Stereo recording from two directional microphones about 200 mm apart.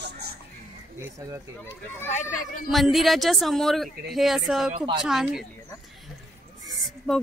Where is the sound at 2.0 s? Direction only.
40° left (ahead or behind).